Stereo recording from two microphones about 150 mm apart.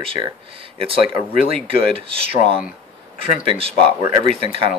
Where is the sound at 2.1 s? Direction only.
40° right (ahead or behind).